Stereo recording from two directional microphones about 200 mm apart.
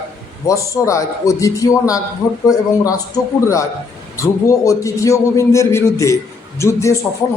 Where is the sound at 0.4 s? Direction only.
15° left (ahead or behind).